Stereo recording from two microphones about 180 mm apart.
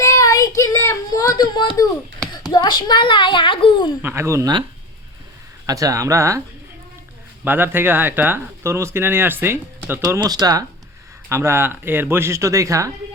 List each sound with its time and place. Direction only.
0.0 s child singing: 20° left (ahead or behind)
2.5 s a child's voice: 25° left (ahead or behind)
4.0 s speech: 15° right (ahead or behind)
5.6 s speech: 20° right (ahead or behind)
7.4 s speech: 10° right (ahead or behind)